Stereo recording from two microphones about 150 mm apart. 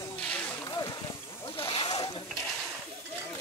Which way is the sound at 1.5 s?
35° left (ahead or behind).